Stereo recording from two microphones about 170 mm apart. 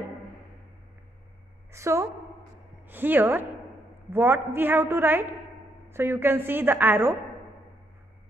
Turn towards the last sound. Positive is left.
turn(degrees=-10)  # may be behind; listen again after turning